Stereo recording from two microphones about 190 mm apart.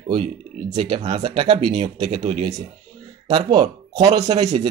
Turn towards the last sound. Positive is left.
turn(degrees=-30)  # may be behind; listen again after turning